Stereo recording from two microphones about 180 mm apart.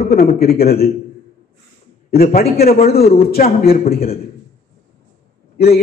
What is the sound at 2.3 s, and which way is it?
A man's voice, 55° left (ahead or behind).